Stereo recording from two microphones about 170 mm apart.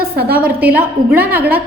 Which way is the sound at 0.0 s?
65° right (ahead or behind).